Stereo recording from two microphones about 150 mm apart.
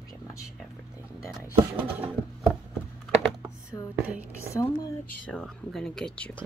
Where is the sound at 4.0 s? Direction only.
10° right (ahead or behind).